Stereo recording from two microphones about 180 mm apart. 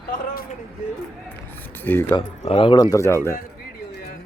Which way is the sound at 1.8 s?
10° left (ahead or behind).